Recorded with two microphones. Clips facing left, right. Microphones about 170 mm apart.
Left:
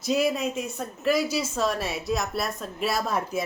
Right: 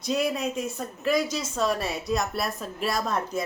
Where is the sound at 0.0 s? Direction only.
Centre (ahead or behind).